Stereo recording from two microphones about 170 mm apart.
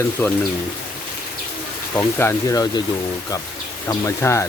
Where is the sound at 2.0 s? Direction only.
15° left (ahead or behind).